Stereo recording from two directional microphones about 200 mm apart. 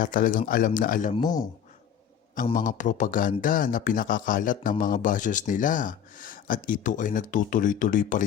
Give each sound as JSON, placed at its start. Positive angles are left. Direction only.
{"t": 0.0, "sound": "speech", "side_deg": 40}
{"t": 1.1, "sound": "speech", "side_deg": 20}
{"t": 2.3, "sound": "speech", "side_deg": 40}